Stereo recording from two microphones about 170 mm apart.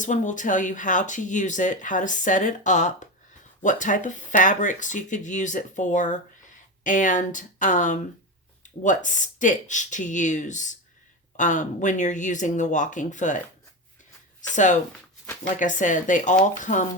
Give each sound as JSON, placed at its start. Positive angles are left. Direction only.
{"t": 0.0, "sound": "speech", "side_deg": 45}
{"t": 14.5, "sound": "speech", "side_deg": 45}